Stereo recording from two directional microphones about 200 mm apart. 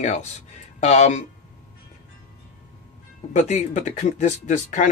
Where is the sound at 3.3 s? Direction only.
35° left (ahead or behind).